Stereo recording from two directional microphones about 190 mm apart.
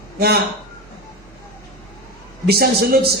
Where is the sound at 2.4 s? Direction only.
55° right (ahead or behind).